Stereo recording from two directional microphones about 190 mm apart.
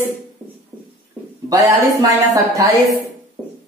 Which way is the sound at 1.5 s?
20° right (ahead or behind).